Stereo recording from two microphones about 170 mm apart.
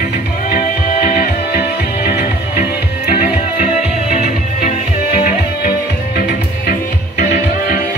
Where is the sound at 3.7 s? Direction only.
40° left (ahead or behind).